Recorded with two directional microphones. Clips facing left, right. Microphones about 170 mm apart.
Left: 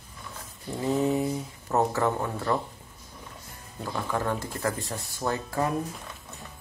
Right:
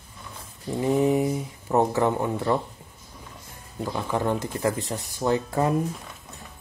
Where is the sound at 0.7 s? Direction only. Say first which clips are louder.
Right 4 dB; 15° right (ahead or behind).